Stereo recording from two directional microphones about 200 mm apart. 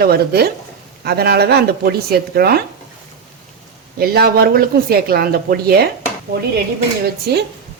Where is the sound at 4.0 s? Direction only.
50° right (ahead or behind).